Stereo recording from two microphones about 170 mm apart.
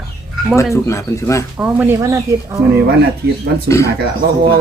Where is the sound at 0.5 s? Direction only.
15° left (ahead or behind).